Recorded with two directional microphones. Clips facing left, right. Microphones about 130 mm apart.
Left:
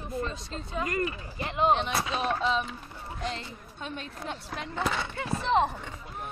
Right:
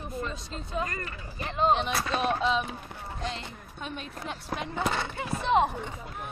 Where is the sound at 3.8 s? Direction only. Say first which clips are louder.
Even; 10° right (ahead or behind).